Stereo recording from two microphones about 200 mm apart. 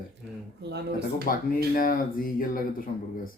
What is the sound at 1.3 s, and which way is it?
Speech, 45° left (ahead or behind).